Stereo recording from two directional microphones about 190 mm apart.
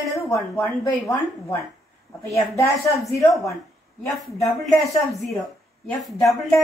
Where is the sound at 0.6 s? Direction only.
20° left (ahead or behind).